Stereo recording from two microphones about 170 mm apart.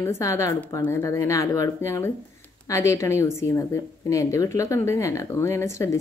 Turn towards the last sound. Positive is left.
turn(degrees=15)  # may be behind; listen again after turning